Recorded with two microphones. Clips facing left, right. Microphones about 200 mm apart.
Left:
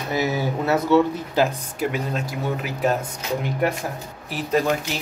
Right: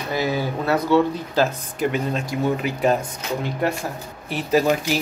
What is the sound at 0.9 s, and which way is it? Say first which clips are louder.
Speech: even; 5° left (ahead or behind).